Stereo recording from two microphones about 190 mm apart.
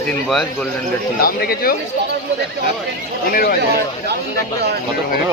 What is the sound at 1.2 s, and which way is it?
Speech, 50° left (ahead or behind).